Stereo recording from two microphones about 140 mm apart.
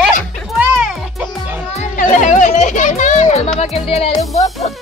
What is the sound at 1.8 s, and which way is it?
Music, 65° left (ahead or behind).